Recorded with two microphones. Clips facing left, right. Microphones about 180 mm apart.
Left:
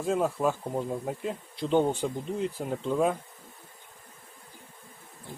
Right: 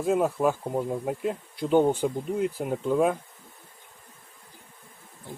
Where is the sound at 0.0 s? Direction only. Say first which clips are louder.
Right 3 dB; 5° right (ahead or behind).